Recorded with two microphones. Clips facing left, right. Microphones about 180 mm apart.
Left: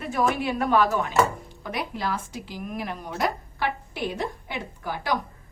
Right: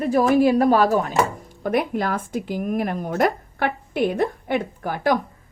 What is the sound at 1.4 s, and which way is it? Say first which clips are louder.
Speech: right 10 dB; 50° right (ahead or behind).